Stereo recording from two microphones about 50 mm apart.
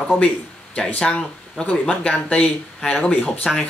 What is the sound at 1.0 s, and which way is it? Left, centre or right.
Speech, centre.